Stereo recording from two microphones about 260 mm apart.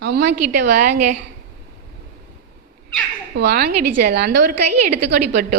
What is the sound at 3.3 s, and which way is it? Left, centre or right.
Speech, right.